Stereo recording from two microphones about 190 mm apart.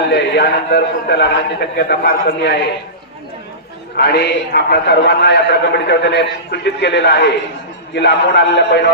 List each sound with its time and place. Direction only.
0.1 s a man's voice: 60° left (ahead or behind)
3.9 s a man's voice: 60° left (ahead or behind)